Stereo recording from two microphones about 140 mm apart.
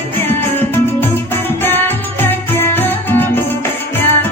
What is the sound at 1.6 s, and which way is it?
Music, 15° left (ahead or behind).